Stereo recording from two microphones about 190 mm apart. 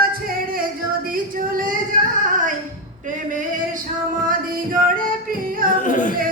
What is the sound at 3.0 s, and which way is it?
Singing, 40° right (ahead or behind).